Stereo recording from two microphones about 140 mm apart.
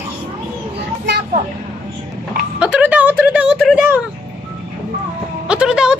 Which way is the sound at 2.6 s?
10° right (ahead or behind).